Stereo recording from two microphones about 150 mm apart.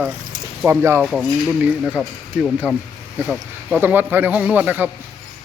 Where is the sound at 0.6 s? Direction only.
15° right (ahead or behind).